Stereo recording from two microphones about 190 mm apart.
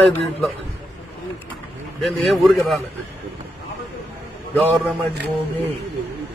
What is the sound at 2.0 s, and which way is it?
Speech, centre (ahead or behind).